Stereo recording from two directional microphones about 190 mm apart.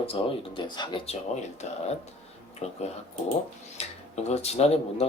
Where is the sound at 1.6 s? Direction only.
35° left (ahead or behind).